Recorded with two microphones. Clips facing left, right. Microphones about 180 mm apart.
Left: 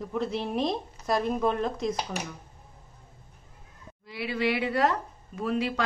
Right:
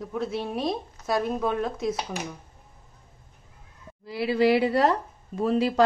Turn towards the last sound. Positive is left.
turn(degrees=-35)  # may be behind; listen again after turning